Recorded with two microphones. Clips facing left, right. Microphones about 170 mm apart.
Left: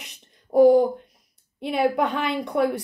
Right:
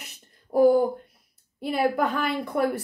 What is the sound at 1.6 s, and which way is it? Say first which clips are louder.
Speech: left 2 dB; 5° right (ahead or behind).